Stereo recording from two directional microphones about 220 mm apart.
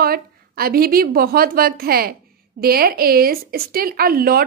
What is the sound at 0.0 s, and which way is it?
A child's voice, 45° right (ahead or behind).